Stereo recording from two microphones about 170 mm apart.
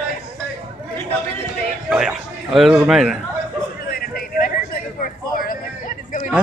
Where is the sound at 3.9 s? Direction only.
60° left (ahead or behind).